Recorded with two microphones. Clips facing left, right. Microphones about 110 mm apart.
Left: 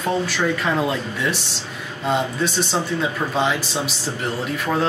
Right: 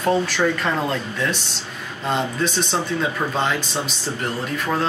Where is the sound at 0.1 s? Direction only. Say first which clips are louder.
Right 2 dB; 5° left (ahead or behind).